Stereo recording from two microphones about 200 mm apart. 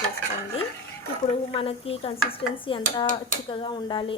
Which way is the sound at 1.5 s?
30° left (ahead or behind).